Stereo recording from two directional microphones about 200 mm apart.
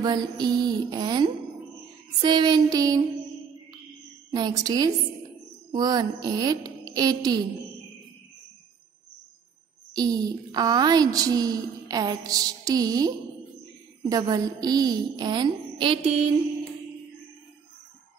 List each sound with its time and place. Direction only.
0.0 s a child's voice: 20° right (ahead or behind)
4.3 s a child's voice: 20° right (ahead or behind)
9.9 s a child's voice: 20° right (ahead or behind)